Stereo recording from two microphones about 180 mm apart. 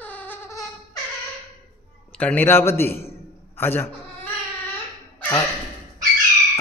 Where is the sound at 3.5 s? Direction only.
10° left (ahead or behind).